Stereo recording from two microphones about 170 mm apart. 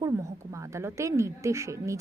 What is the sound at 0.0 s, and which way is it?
A woman's voice, 20° right (ahead or behind).